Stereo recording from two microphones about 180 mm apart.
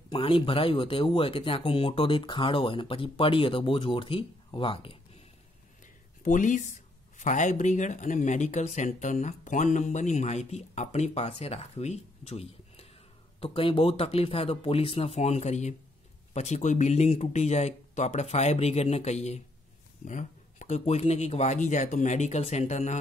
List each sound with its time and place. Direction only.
0.1 s speech: 30° left (ahead or behind)
6.2 s speech: 45° left (ahead or behind)